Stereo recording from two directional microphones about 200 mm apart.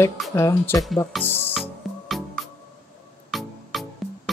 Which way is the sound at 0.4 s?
15° left (ahead or behind).